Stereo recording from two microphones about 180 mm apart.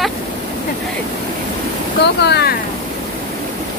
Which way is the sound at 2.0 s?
70° left (ahead or behind).